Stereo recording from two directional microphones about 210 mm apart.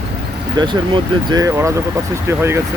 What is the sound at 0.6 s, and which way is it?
Speech, 20° right (ahead or behind).